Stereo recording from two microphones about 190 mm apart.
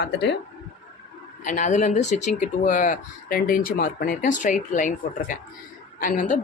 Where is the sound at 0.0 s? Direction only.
65° left (ahead or behind).